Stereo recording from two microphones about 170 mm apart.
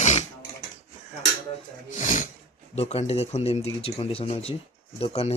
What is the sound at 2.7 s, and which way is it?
Speech, 40° left (ahead or behind).